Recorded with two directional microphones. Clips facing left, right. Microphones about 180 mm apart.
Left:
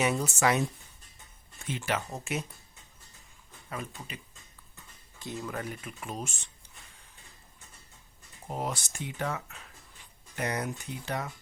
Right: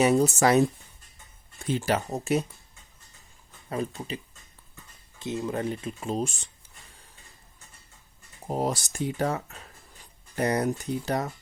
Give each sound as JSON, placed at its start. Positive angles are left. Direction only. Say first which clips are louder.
{"t": 0.0, "sound": "speech", "louder": "right 7 dB", "side_deg": -35}
{"t": 3.7, "sound": "speech", "louder": "right 9 dB", "side_deg": -30}
{"t": 5.2, "sound": "speech", "louder": "right 7 dB", "side_deg": -20}
{"t": 8.4, "sound": "speech", "louder": "right 7 dB", "side_deg": -40}